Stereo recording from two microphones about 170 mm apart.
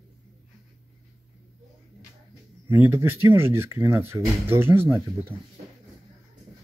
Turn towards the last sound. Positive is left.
turn(degrees=-15)  # may be behind; listen again after turning